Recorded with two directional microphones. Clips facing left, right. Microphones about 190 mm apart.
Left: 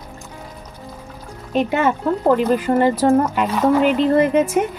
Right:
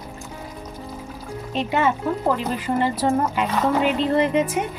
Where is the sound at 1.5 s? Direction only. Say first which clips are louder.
Left 4 dB; 50° left (ahead or behind).